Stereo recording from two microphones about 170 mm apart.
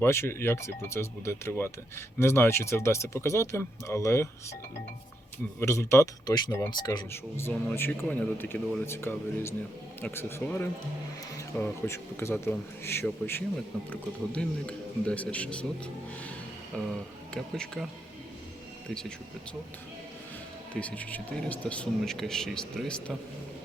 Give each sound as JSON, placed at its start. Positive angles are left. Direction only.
{"t": 0.0, "sound": "speech", "side_deg": 15}
{"t": 5.5, "sound": "speech", "side_deg": 15}
{"t": 7.3, "sound": "speech", "side_deg": 10}
{"t": 16.7, "sound": "speech", "side_deg": 5}
{"t": 20.7, "sound": "speech", "side_deg": 10}